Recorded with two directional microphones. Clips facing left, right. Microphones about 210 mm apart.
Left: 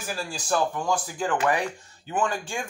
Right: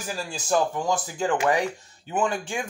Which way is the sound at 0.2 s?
20° right (ahead or behind).